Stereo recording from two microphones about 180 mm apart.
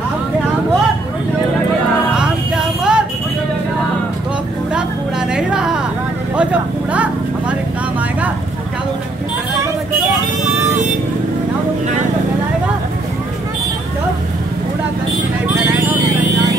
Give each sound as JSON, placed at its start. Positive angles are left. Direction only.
{"t": 2.1, "sound": "music", "side_deg": -5}
{"t": 5.3, "sound": "a sound", "side_deg": -5}
{"t": 6.9, "sound": "vehicle", "side_deg": -5}